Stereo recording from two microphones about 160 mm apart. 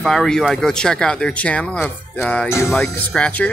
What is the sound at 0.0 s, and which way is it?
Speech, centre (ahead or behind).